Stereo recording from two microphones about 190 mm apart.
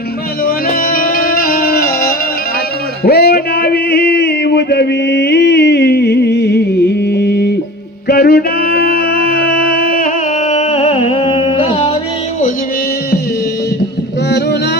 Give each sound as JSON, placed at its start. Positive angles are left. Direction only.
{"t": 0.4, "sound": "music", "side_deg": 50}
{"t": 10.5, "sound": "music", "side_deg": 35}